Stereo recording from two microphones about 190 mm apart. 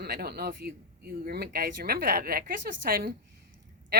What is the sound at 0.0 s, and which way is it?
Speech, 55° right (ahead or behind).